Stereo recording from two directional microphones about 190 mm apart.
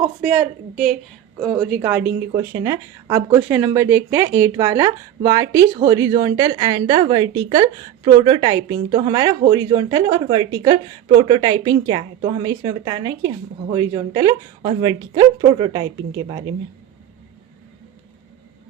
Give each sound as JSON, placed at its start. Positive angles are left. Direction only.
{"t": 0.2, "sound": "speech", "side_deg": -5}